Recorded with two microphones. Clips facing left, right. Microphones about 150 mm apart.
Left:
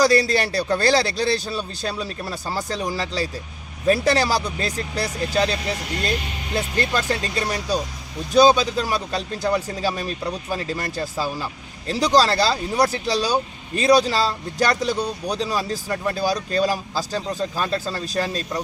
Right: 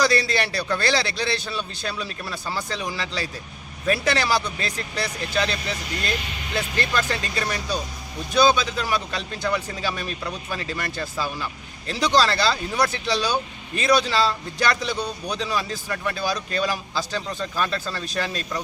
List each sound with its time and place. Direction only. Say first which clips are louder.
0.0 s speech: left 4 dB; 40° left (ahead or behind)